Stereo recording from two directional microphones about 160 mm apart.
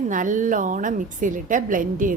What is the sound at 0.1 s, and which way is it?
A woman's voice, 55° right (ahead or behind).